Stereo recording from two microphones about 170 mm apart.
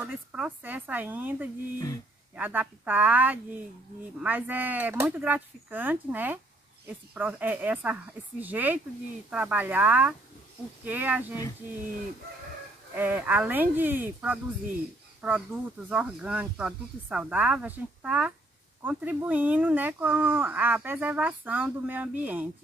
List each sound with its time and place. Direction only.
0.0 s speech: 5° right (ahead or behind)
12.9 s speech: 10° right (ahead or behind)